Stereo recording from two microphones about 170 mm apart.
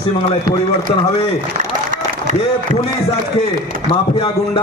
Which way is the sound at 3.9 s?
35° left (ahead or behind).